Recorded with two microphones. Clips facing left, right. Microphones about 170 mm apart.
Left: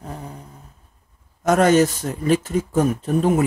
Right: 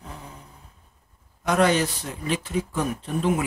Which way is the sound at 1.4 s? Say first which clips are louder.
Left 6 dB; 45° left (ahead or behind).